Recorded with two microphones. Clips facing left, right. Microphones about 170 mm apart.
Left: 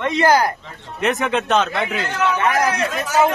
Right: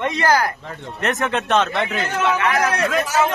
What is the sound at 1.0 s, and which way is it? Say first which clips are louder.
Speech: left 2 dB; centre (ahead or behind).